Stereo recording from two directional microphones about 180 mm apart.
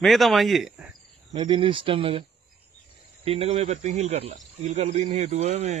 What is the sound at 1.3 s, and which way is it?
Speech, 25° right (ahead or behind).